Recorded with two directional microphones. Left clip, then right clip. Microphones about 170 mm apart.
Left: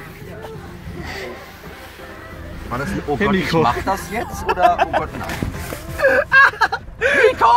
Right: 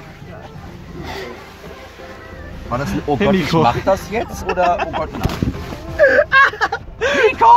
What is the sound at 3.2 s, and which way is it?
Speech, 5° right (ahead or behind).